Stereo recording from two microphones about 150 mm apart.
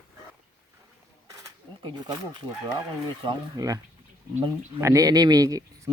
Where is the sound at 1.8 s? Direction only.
30° right (ahead or behind).